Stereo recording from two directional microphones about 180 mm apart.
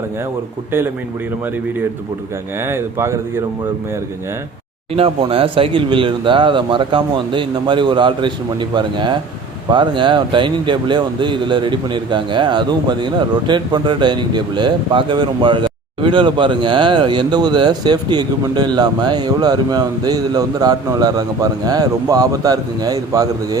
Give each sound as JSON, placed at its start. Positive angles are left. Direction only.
{"t": 2.6, "sound": "speech", "side_deg": -15}
{"t": 4.9, "sound": "speech", "side_deg": -30}